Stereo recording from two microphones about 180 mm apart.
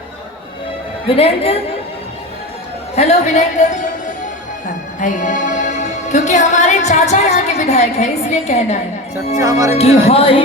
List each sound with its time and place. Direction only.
1.0 s music: 30° left (ahead or behind)
2.9 s music: 35° left (ahead or behind)
4.9 s music: 45° left (ahead or behind)
9.4 s speech: 20° right (ahead or behind)
9.7 s music: 35° left (ahead or behind)